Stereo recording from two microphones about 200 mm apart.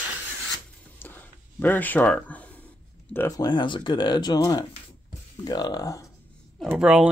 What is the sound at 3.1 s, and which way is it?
Speech, 15° left (ahead or behind).